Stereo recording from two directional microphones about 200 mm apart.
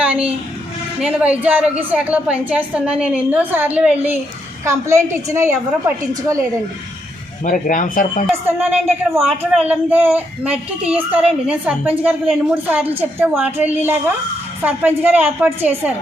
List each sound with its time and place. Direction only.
0.0 s a sound: 5° right (ahead or behind)
1.0 s a woman's voice: 5° right (ahead or behind)
7.4 s speech: 40° left (ahead or behind)
8.4 s a woman's voice: 10° right (ahead or behind)